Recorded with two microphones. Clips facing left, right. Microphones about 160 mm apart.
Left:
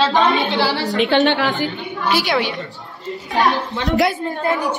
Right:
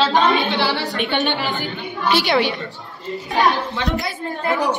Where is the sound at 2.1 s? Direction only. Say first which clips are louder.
Right 1 dB; 5° left (ahead or behind).